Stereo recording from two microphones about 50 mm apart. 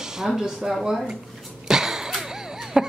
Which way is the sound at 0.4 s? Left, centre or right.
Centre.